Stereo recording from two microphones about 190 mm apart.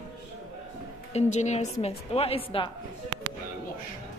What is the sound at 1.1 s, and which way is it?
A woman's voice, 35° left (ahead or behind).